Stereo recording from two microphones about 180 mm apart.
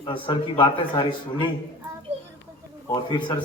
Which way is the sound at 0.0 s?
25° left (ahead or behind).